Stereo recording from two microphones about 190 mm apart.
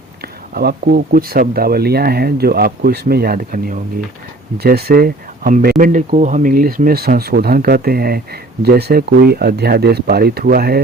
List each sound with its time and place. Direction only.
0.5 s speech: 55° right (ahead or behind)